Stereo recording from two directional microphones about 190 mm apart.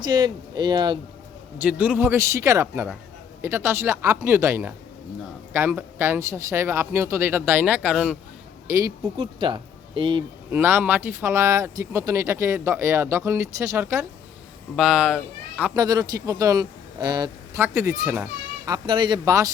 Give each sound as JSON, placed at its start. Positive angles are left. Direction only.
{"t": 0.0, "sound": "speech", "side_deg": -25}
{"t": 1.5, "sound": "speech", "side_deg": -10}
{"t": 8.6, "sound": "speech", "side_deg": -15}
{"t": 10.5, "sound": "speech", "side_deg": -10}
{"t": 14.8, "sound": "speech", "side_deg": -5}
{"t": 15.7, "sound": "speech", "side_deg": -20}